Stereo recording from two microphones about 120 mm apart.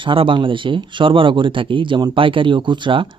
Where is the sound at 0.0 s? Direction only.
45° right (ahead or behind).